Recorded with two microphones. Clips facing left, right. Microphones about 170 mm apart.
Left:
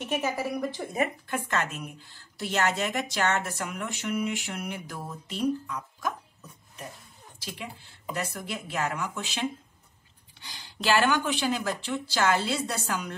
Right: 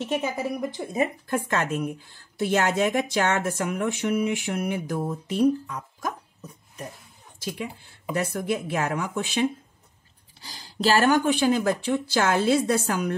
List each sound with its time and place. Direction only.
0.0 s speech: 25° right (ahead or behind)
1.2 s speech: 45° right (ahead or behind)
7.3 s speech: 50° right (ahead or behind)
10.4 s speech: 35° right (ahead or behind)